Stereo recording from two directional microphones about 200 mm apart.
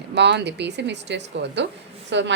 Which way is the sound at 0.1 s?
60° right (ahead or behind).